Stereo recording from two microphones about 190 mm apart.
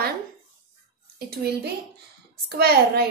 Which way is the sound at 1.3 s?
55° right (ahead or behind).